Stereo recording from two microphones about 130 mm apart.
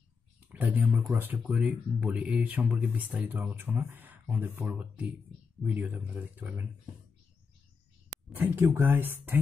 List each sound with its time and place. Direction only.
0.4 s speech: 15° right (ahead or behind)
8.4 s speech: 20° right (ahead or behind)